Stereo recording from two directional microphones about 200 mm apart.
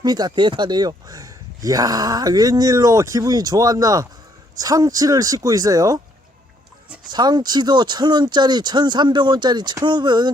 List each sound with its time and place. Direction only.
0.0 s speech: 20° right (ahead or behind)
7.1 s speech: 20° right (ahead or behind)